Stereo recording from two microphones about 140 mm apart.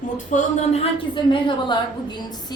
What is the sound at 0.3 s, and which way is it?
Speech, 55° left (ahead or behind).